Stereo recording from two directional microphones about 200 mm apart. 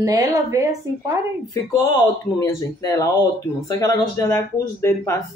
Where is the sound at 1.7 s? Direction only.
15° left (ahead or behind).